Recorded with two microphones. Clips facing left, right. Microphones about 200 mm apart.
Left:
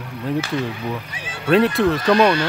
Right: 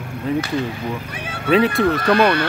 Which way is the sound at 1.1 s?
60° right (ahead or behind).